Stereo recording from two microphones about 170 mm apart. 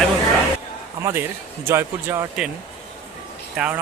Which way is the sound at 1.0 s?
15° right (ahead or behind).